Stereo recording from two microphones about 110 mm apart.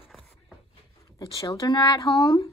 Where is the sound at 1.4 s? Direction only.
35° left (ahead or behind).